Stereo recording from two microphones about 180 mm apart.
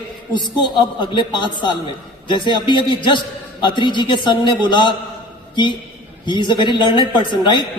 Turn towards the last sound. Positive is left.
turn(degrees=25)  # may be behind; listen again after turning